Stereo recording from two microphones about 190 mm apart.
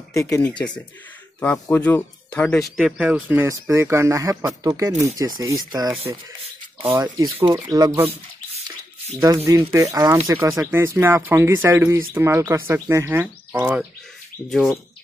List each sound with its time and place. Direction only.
0.1 s speech: 15° left (ahead or behind); by 8.1 s 20° right (ahead or behind)
9.2 s speech: 15° right (ahead or behind); by 14.8 s centre (ahead or behind)